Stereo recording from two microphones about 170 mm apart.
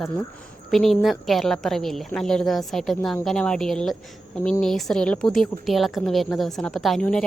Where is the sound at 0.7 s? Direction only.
Centre (ahead or behind).